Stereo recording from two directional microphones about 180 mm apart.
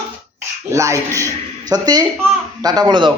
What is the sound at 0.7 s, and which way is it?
Speech, 15° right (ahead or behind).